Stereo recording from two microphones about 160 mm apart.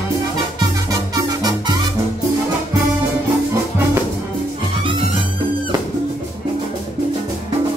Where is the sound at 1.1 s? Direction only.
25° right (ahead or behind).